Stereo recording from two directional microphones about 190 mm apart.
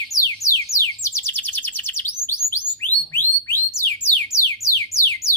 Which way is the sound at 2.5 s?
10° left (ahead or behind).